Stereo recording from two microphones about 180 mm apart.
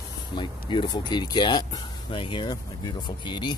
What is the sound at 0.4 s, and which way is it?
Speech, 25° left (ahead or behind).